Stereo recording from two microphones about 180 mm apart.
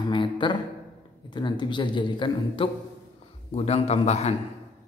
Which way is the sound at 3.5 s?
35° left (ahead or behind).